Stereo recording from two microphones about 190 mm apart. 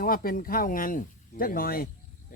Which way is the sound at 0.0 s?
50° left (ahead or behind).